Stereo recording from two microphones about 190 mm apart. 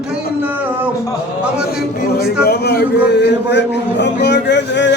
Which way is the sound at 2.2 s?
55° left (ahead or behind).